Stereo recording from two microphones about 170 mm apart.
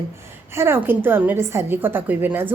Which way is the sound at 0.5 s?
15° right (ahead or behind).